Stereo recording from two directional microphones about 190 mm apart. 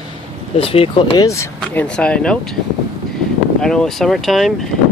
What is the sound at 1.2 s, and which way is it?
Speech, 10° left (ahead or behind).